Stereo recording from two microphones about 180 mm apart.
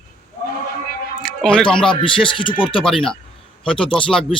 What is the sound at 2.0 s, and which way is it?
Speech, 30° left (ahead or behind).